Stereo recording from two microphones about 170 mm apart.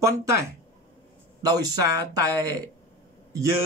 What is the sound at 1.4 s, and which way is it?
Speech, 20° right (ahead or behind).